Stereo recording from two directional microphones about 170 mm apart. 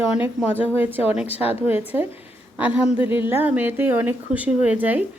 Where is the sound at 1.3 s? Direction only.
35° left (ahead or behind).